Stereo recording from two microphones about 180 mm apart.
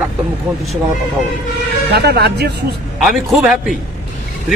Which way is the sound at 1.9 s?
65° right (ahead or behind).